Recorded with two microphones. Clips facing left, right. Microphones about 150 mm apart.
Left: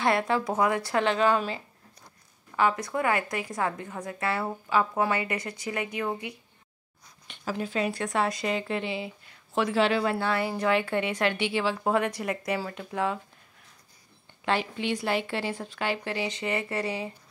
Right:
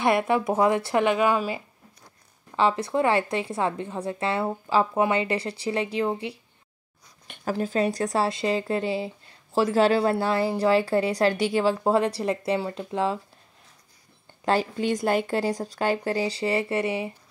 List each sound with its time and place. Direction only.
0.0 s a woman's voice: 20° right (ahead or behind)
1.0 s a woman's voice: 10° right (ahead or behind)
2.5 s a woman's voice: 25° right (ahead or behind)
7.2 s a woman's voice: 45° right (ahead or behind); by 13.2 s 30° right (ahead or behind)
14.4 s a woman's voice: 40° right (ahead or behind); by 17.1 s 25° right (ahead or behind)